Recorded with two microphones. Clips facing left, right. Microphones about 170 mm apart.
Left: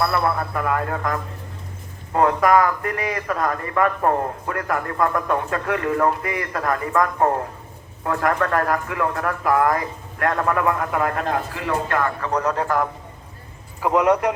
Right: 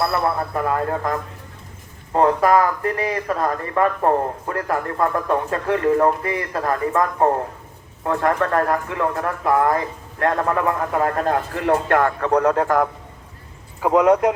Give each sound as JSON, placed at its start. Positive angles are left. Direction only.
{"t": 0.0, "sound": "a man's voice", "side_deg": -25}
{"t": 2.1, "sound": "a man's voice", "side_deg": -30}
{"t": 11.6, "sound": "a man's voice", "side_deg": -60}